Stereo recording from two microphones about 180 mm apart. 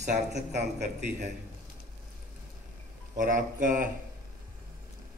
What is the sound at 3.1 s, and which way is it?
Speech, 45° right (ahead or behind).